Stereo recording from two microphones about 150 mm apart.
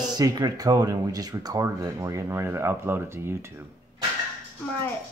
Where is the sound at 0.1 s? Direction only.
25° right (ahead or behind).